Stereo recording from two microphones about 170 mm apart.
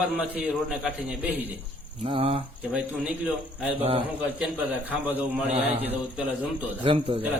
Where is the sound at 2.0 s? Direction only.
30° right (ahead or behind).